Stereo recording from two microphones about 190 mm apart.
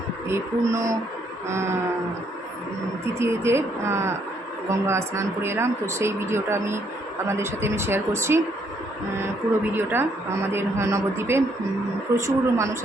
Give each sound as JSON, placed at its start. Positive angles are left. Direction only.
{"t": 0.3, "sound": "speech", "side_deg": -15}
{"t": 3.2, "sound": "speech", "side_deg": -15}
{"t": 9.7, "sound": "speech", "side_deg": -10}